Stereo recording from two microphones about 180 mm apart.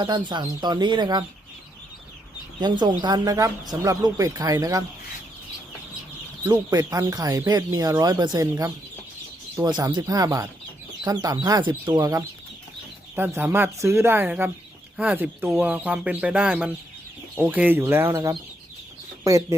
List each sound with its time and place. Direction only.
0.0 s speech: 25° right (ahead or behind)
2.6 s speech: 25° right (ahead or behind)
6.4 s speech: 20° right (ahead or behind)